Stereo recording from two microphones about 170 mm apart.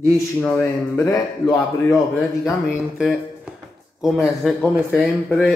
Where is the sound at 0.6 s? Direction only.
15° left (ahead or behind).